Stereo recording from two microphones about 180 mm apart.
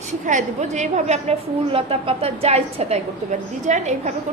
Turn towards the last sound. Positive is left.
turn(degrees=-40)  # may be behind; listen again after turning